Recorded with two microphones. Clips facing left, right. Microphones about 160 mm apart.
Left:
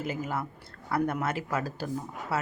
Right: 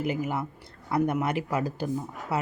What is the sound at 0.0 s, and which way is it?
Speech, 15° right (ahead or behind).